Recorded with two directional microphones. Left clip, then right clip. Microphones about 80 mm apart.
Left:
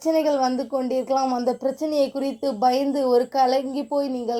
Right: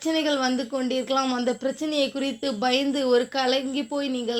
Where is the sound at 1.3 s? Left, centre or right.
Centre.